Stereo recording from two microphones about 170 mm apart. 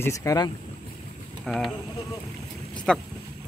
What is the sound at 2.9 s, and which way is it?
Speech, 5° left (ahead or behind).